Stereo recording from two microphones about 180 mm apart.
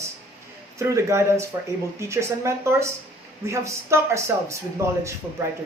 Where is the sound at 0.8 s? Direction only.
15° right (ahead or behind).